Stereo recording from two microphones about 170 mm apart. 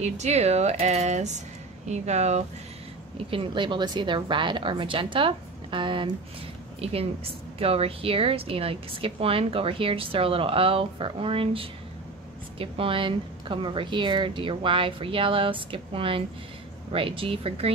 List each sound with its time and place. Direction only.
0.0 s a woman's voice: 40° right (ahead or behind)